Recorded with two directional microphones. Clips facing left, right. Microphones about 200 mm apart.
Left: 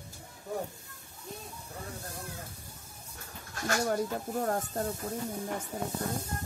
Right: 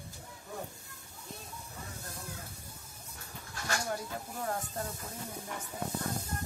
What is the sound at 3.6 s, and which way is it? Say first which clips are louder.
Speech: left 7 dB; 50° left (ahead or behind).